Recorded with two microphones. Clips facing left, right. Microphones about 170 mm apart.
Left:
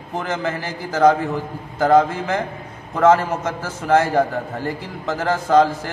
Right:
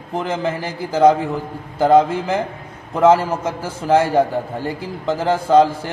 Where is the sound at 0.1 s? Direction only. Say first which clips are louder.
Right 2 dB; 30° right (ahead or behind).